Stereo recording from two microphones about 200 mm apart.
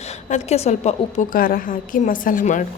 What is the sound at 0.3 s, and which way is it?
A woman's voice, 35° left (ahead or behind).